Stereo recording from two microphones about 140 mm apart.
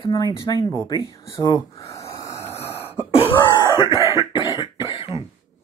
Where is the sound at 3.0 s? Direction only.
40° left (ahead or behind).